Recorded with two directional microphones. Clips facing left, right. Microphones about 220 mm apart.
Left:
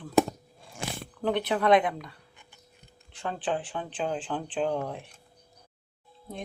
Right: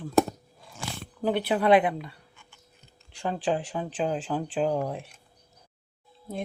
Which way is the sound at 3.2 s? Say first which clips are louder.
Right 3 dB; 10° right (ahead or behind).